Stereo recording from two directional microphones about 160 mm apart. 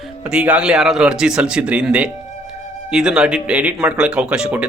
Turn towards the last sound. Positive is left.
turn(degrees=-5)  # may be behind; listen again after turning